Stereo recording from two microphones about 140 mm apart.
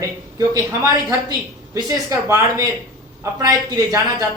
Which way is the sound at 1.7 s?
20° right (ahead or behind).